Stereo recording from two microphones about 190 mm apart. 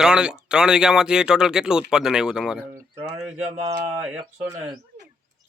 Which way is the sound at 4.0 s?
10° right (ahead or behind).